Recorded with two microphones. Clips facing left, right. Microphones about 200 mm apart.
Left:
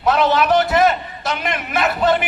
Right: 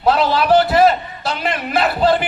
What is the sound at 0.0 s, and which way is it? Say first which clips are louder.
A man's voice: even; 30° right (ahead or behind).